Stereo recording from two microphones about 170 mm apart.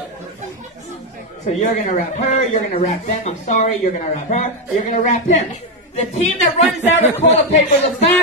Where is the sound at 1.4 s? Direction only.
45° left (ahead or behind).